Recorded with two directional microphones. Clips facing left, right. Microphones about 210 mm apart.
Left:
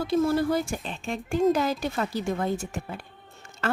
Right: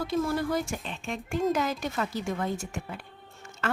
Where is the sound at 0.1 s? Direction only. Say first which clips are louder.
Left 6 dB; 30° left (ahead or behind).